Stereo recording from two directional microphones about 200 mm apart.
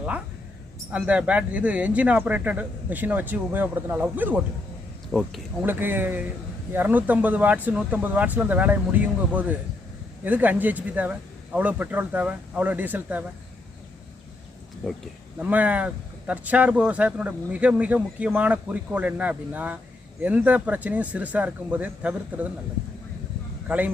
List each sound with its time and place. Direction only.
0.9 s speech: 5° right (ahead or behind)
5.6 s speech: 10° right (ahead or behind)
15.4 s speech: 5° right (ahead or behind)
23.6 s a man's voice: 10° right (ahead or behind)